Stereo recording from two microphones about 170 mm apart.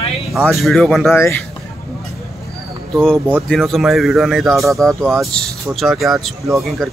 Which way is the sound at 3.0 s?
5° left (ahead or behind).